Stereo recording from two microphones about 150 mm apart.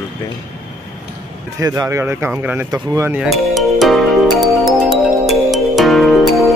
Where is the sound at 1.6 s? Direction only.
20° right (ahead or behind).